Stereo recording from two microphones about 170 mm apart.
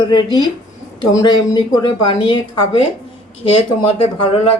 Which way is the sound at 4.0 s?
35° left (ahead or behind).